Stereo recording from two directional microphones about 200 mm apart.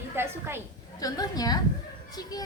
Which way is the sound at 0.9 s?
20° left (ahead or behind).